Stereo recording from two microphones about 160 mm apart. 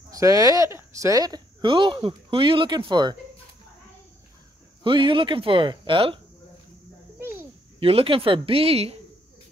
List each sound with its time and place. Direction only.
0.1 s speech: 20° right (ahead or behind)
4.8 s speech: 30° right (ahead or behind)
7.2 s a sound: 15° right (ahead or behind)
7.8 s speech: 35° right (ahead or behind)